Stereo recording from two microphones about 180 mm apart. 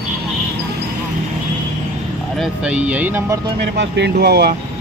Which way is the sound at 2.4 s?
5° right (ahead or behind).